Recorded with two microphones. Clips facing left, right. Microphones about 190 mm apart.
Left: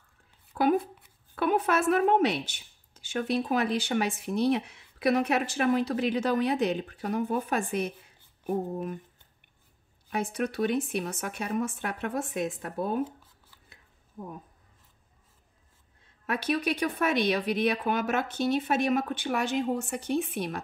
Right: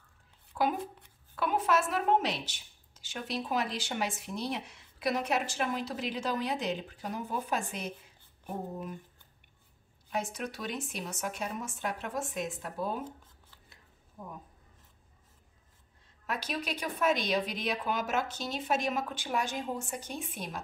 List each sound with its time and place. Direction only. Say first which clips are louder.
1.4 s a woman's voice: left 4 dB; 60° left (ahead or behind)
10.1 s a woman's voice: left 6 dB; 60° left (ahead or behind)
16.3 s a woman's voice: left 8 dB; 60° left (ahead or behind)